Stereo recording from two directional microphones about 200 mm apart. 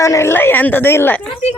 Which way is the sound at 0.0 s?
15° left (ahead or behind).